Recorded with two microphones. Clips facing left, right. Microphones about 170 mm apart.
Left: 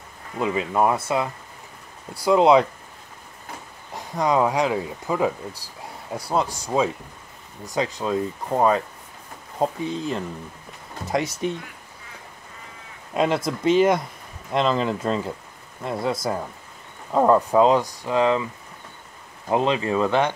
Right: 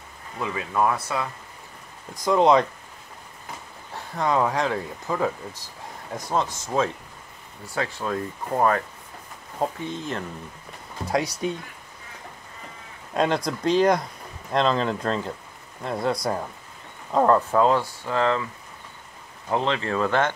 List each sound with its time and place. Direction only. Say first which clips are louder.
0.4 s speech: left 3 dB; 20° left (ahead or behind)
2.2 s speech: left 2 dB; 10° left (ahead or behind)
3.9 s speech: left 2 dB; 15° left (ahead or behind)
11.1 s speech: left 1 dB; centre (ahead or behind)
13.1 s speech: left 1 dB; 5° left (ahead or behind)
19.5 s speech: left 3 dB; 15° left (ahead or behind)